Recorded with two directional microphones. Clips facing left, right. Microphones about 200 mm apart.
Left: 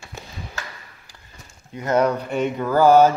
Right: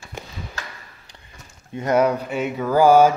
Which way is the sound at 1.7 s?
25° right (ahead or behind).